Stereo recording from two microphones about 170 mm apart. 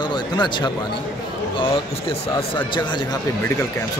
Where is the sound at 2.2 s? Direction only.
30° left (ahead or behind).